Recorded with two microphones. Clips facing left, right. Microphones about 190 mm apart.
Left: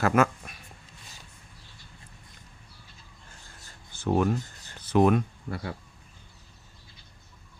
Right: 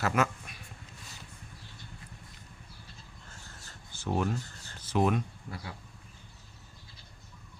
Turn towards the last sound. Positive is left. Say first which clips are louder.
# left 7 dB
turn(degrees=60)  # may be behind; listen again after turning